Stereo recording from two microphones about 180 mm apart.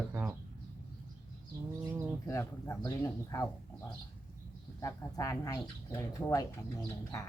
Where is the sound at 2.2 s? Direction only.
15° left (ahead or behind).